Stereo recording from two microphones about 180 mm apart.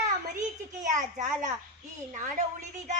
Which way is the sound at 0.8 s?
45° right (ahead or behind).